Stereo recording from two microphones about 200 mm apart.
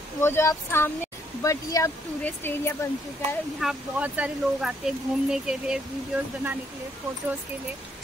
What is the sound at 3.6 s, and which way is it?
Speech, 5° right (ahead or behind).